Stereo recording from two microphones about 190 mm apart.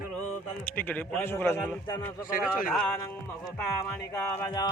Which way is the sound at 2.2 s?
45° left (ahead or behind).